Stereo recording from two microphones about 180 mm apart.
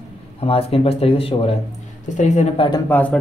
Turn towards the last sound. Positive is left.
turn(degrees=10)  # may be behind; listen again after turning